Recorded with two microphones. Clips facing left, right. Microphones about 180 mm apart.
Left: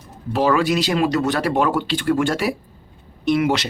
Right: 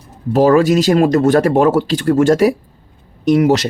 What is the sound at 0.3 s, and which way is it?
A man's voice, 40° right (ahead or behind).